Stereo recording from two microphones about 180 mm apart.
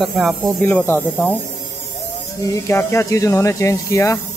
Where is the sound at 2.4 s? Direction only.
15° left (ahead or behind).